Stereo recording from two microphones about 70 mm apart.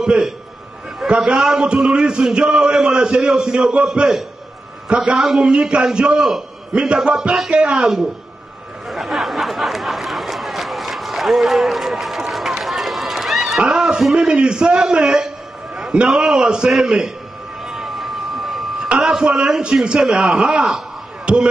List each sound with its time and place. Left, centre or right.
0.0 s a man's voice: centre
8.8 s chatter: centre
15.0 s a man's voice: centre
17.6 s a sound: centre
18.9 s a man's voice: centre